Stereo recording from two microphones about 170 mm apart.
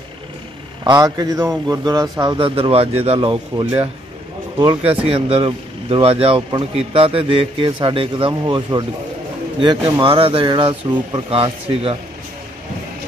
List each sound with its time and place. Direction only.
0.8 s speech: 20° right (ahead or behind)